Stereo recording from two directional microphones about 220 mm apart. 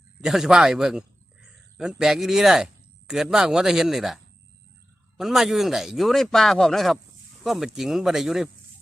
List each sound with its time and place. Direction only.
0.2 s speech: centre (ahead or behind)